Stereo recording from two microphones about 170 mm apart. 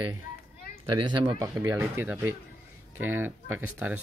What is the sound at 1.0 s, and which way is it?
Speech, 30° right (ahead or behind).